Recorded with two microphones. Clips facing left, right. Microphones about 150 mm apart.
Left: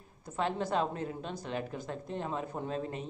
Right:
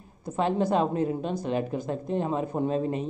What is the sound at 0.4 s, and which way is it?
Speech, 15° right (ahead or behind).